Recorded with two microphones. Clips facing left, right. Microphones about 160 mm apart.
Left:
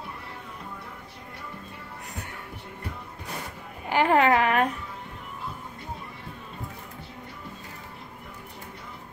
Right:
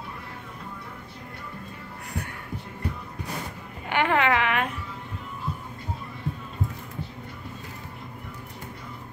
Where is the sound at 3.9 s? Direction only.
35° left (ahead or behind).